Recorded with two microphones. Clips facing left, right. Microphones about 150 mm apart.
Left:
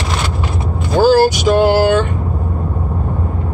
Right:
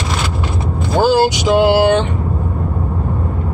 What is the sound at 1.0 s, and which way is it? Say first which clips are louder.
Speech: left 3 dB; 15° right (ahead or behind).